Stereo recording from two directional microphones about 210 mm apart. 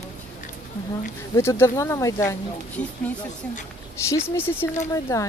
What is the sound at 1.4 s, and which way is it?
Speech, 10° left (ahead or behind).